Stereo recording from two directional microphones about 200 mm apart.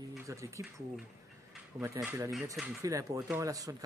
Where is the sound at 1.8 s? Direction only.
15° right (ahead or behind).